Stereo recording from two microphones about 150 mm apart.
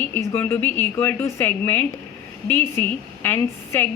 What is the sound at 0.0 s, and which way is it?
A woman's voice, 15° left (ahead or behind).